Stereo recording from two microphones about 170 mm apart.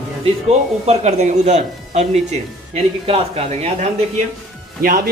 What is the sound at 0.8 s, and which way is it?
Speech, 40° right (ahead or behind).